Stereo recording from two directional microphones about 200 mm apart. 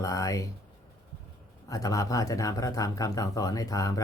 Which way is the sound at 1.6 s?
15° left (ahead or behind).